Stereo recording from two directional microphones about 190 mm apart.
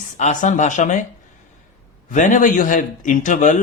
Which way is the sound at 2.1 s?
40° left (ahead or behind).